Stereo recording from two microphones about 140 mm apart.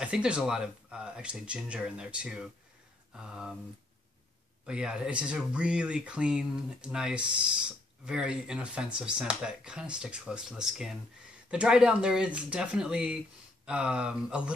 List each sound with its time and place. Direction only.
0.0 s speech: 5° right (ahead or behind)
4.6 s speech: 5° right (ahead or behind)